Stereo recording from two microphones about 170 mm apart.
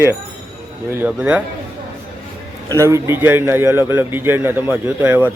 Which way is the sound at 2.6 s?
15° right (ahead or behind).